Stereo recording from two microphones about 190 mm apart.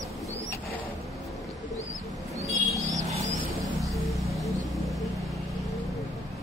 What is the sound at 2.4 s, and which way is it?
Bird, centre (ahead or behind).